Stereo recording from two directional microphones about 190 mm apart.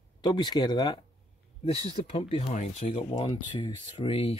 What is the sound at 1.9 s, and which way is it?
Speech, 35° left (ahead or behind).